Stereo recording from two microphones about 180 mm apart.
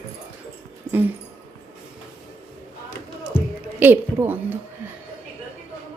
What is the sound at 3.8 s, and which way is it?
Speech, 10° right (ahead or behind).